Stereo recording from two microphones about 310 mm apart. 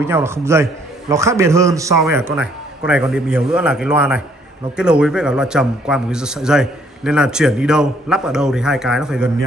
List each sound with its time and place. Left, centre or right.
0.1 s a man's voice: centre